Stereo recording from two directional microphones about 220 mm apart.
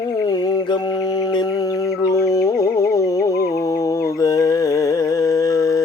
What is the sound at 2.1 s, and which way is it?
Music, 15° left (ahead or behind).